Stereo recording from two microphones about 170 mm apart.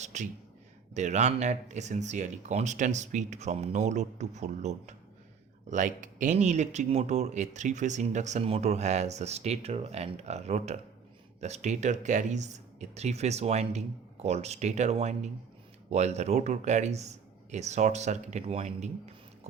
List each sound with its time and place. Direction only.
0.0 s speech: 45° right (ahead or behind)